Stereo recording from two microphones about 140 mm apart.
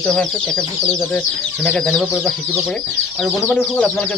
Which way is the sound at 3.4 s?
10° left (ahead or behind).